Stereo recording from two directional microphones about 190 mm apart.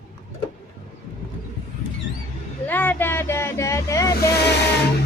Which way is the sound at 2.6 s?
10° left (ahead or behind).